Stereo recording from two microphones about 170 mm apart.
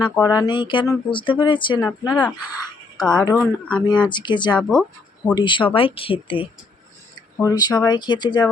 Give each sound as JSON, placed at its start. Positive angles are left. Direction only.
{"t": 0.0, "sound": "speech", "side_deg": 20}
{"t": 1.8, "sound": "speech", "side_deg": 20}
{"t": 3.0, "sound": "speech", "side_deg": 5}
{"t": 4.1, "sound": "speech", "side_deg": 25}
{"t": 4.5, "sound": "speech", "side_deg": 5}
{"t": 5.3, "sound": "speech", "side_deg": 25}